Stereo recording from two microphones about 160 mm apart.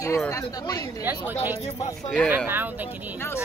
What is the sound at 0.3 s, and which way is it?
Speech, 25° left (ahead or behind).